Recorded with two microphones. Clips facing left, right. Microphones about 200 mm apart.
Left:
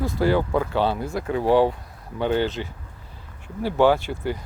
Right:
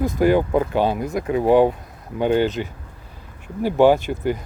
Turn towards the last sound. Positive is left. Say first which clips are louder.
# right 4 dB
turn(degrees=-15)  # may be behind; listen again after turning